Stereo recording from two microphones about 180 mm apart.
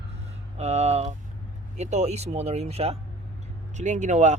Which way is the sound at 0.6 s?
40° right (ahead or behind).